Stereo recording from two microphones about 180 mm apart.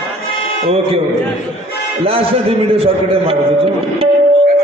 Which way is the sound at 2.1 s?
30° right (ahead or behind).